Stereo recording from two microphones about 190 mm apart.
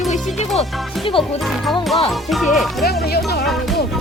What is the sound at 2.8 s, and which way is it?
Speech, 55° left (ahead or behind).